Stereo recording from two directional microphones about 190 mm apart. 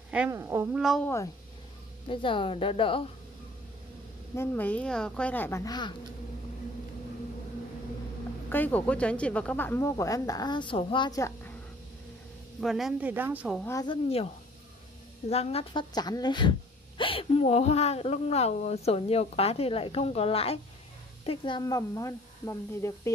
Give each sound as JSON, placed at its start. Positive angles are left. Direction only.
{"t": 0.1, "sound": "speech", "side_deg": -10}
{"t": 0.7, "sound": "a woman's voice", "side_deg": 0}
{"t": 1.0, "sound": "speech", "side_deg": 15}
{"t": 2.0, "sound": "speech", "side_deg": 25}
{"t": 4.4, "sound": "speech", "side_deg": 10}
{"t": 5.7, "sound": "speech", "side_deg": 25}
{"t": 8.5, "sound": "speech", "side_deg": 10}
{"t": 12.5, "sound": "a woman's voice", "side_deg": 0}
{"t": 13.6, "sound": "speech", "side_deg": 15}
{"t": 13.8, "sound": "speech", "side_deg": 30}